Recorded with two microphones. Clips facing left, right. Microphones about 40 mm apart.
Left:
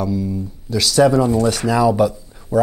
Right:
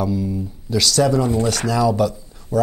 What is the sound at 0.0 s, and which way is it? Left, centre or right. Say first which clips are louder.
Speech: even; centre.